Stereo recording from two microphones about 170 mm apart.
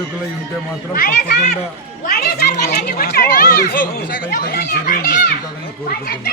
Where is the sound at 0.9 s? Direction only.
55° left (ahead or behind).